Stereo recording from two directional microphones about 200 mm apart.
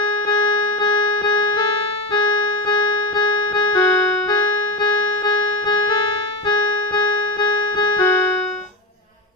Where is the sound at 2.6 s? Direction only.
25° left (ahead or behind).